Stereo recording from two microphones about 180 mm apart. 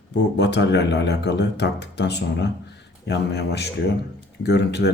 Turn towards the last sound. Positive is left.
turn(degrees=70)  # may be behind; listen again after turning